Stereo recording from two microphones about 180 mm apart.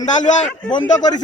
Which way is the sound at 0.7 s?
25° left (ahead or behind).